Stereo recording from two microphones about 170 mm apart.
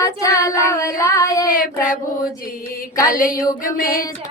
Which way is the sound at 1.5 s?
55° left (ahead or behind).